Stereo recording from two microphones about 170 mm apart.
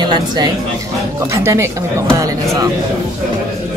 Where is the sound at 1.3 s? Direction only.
15° right (ahead or behind).